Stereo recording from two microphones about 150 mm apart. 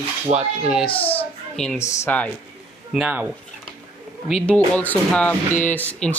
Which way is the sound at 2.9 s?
5° right (ahead or behind).